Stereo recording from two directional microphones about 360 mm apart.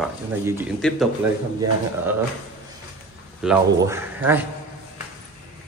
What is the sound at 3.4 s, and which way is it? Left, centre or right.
Speech, centre.